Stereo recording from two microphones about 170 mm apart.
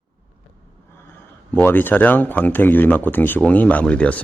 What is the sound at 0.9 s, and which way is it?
Speech, 15° left (ahead or behind).